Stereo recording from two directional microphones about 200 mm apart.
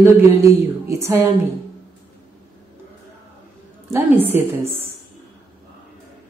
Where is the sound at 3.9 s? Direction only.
10° right (ahead or behind).